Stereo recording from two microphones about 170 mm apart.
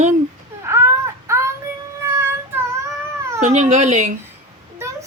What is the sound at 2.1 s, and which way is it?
Cat, 15° right (ahead or behind).